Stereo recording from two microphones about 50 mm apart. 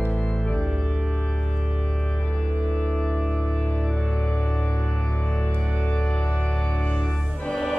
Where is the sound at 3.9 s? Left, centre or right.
Centre.